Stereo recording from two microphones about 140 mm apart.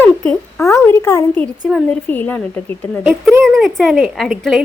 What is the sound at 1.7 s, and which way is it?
Speech, centre (ahead or behind).